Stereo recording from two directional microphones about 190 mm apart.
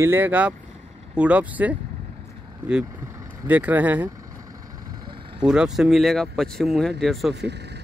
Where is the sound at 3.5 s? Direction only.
10° right (ahead or behind).